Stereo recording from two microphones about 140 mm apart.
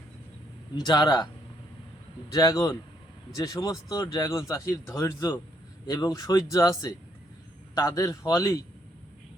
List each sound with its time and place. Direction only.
0.9 s speech: 30° left (ahead or behind)
2.3 s speech: 25° left (ahead or behind)